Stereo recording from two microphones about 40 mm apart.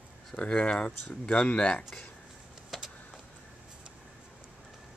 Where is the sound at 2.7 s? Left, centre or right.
Centre.